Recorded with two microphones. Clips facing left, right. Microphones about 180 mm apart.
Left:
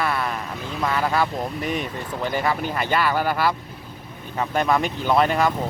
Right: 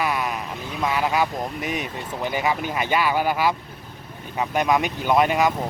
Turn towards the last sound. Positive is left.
turn(degrees=-10)  # may be behind; listen again after turning